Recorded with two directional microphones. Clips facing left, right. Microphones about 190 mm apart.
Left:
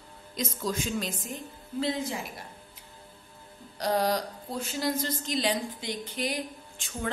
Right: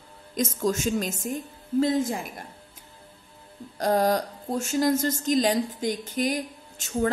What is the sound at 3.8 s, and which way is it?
A woman's voice, 45° right (ahead or behind).